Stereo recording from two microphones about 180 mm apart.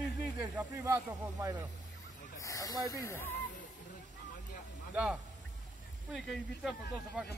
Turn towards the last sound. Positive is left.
turn(degrees=0)  # may be behind; listen again after turning